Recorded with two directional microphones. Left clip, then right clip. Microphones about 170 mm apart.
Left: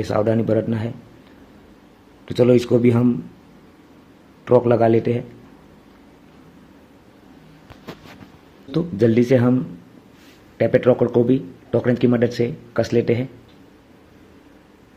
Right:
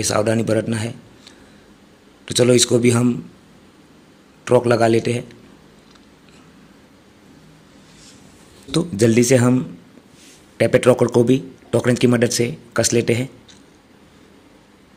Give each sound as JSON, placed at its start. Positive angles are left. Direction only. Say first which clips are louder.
{"t": 0.0, "sound": "speech", "louder": "right 1 dB", "side_deg": -10}
{"t": 2.2, "sound": "speech", "louder": "right 1 dB", "side_deg": -5}
{"t": 4.5, "sound": "speech", "louder": "even", "side_deg": -10}
{"t": 8.7, "sound": "speech", "louder": "right 1 dB", "side_deg": -15}